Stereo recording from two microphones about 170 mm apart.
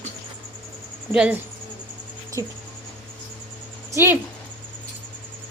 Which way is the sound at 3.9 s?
15° right (ahead or behind).